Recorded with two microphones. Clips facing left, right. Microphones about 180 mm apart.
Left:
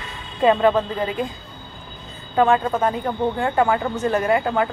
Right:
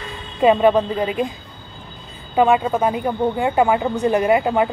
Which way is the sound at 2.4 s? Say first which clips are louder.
Right 2 dB; 15° right (ahead or behind).